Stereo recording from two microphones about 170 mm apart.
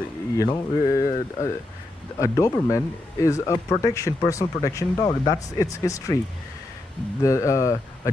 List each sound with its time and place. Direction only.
0.4 s speech: 20° left (ahead or behind)
7.2 s speech: 20° left (ahead or behind)